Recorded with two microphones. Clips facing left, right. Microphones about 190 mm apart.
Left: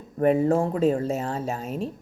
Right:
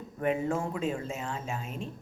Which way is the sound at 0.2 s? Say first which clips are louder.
Left 9 dB; 35° left (ahead or behind).